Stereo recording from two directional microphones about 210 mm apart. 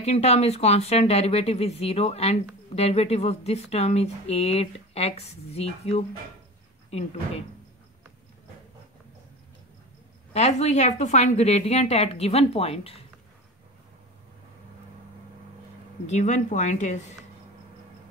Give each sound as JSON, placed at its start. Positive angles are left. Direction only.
{"t": 0.0, "sound": "a woman's voice", "side_deg": 30}
{"t": 10.3, "sound": "a woman's voice", "side_deg": 30}
{"t": 16.1, "sound": "a woman's voice", "side_deg": 35}